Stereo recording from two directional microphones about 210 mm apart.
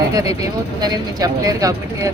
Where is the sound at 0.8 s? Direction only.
20° right (ahead or behind).